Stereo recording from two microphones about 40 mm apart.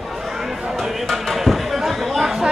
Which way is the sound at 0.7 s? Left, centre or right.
Centre.